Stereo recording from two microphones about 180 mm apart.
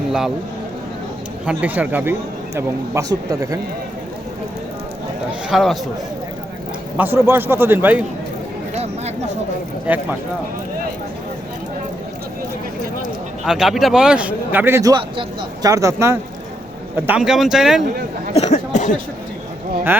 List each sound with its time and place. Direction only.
1.5 s speech: 10° right (ahead or behind)
5.5 s speech: centre (ahead or behind)
6.9 s speech: 10° right (ahead or behind)
8.7 s a sound: 35° right (ahead or behind)
9.8 s speech: 10° right (ahead or behind)
13.4 s speech: centre (ahead or behind)
17.1 s speech: 5° right (ahead or behind)
18.3 s a sound: 40° left (ahead or behind)